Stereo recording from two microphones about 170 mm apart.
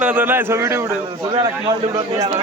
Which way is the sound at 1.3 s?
30° right (ahead or behind).